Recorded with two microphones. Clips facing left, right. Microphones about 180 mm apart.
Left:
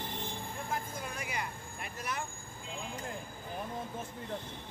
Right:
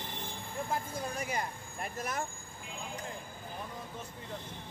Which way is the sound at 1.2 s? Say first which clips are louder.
Right 3 dB; 40° right (ahead or behind).